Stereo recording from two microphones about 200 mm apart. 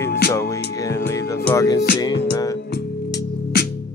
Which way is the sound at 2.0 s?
20° left (ahead or behind).